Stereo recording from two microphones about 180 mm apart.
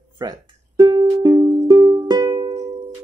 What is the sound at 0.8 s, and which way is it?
Music, 25° right (ahead or behind).